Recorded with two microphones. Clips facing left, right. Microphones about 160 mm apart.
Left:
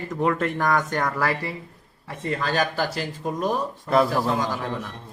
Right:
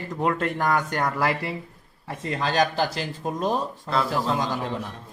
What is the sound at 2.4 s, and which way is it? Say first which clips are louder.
Speech: right 3 dB; 20° right (ahead or behind).